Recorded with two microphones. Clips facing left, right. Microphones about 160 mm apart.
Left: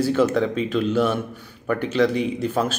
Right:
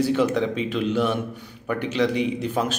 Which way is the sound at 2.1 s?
45° left (ahead or behind).